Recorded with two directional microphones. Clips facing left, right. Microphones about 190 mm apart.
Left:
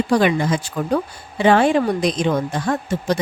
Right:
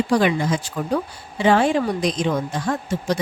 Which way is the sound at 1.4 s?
60° left (ahead or behind).